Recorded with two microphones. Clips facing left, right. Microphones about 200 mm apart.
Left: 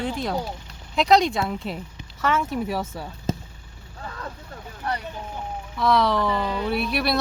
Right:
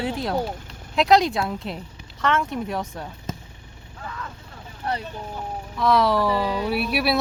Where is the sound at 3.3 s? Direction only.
30° left (ahead or behind).